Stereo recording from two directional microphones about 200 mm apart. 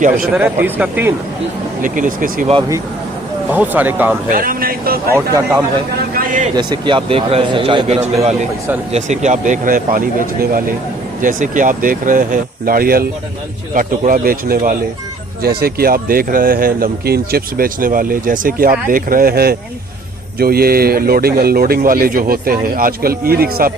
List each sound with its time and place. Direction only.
0.3 s speech: 10° right (ahead or behind)
1.8 s speech: 40° right (ahead or behind)
3.5 s speech: 10° right (ahead or behind)
4.3 s speech: 45° right (ahead or behind)
5.1 s speech: 15° right (ahead or behind)
6.1 s vehicle: 40° right (ahead or behind)
6.6 s a man's voice: 25° right (ahead or behind); by 23.7 s 50° right (ahead or behind)